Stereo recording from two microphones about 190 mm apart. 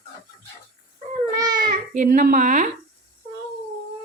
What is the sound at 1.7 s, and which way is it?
A child's voice, 45° right (ahead or behind).